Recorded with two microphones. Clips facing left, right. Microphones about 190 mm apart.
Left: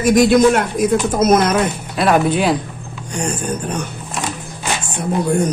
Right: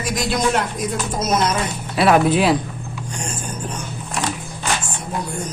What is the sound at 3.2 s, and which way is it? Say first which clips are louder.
Speech: left 9 dB; 65° left (ahead or behind).